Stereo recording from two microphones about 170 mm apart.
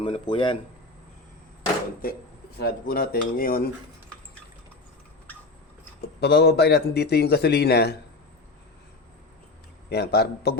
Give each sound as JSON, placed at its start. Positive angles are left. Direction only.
{"t": 0.0, "sound": "speech", "side_deg": 30}
{"t": 2.6, "sound": "dishes", "side_deg": 65}
{"t": 6.0, "sound": "a man's voice", "side_deg": 70}
{"t": 9.9, "sound": "a man's voice", "side_deg": 70}